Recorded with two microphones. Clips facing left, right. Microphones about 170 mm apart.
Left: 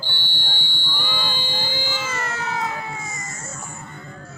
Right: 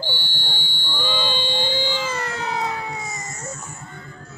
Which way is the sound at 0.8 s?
10° left (ahead or behind).